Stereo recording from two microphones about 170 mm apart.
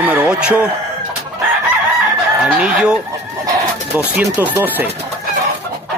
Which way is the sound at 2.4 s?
5° right (ahead or behind).